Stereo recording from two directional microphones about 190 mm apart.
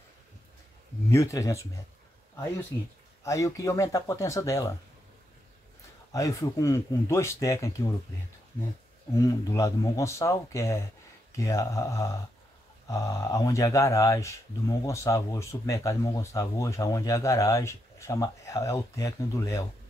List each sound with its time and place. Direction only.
1.1 s speech: 15° left (ahead or behind)
3.3 s speech: 15° left (ahead or behind)
6.1 s speech: 15° left (ahead or behind)
9.1 s speech: 20° left (ahead or behind)